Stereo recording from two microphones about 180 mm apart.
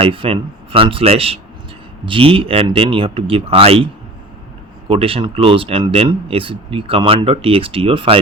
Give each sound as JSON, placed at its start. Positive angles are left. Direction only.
{"t": 0.0, "sound": "speech", "side_deg": -30}
{"t": 4.9, "sound": "speech", "side_deg": -30}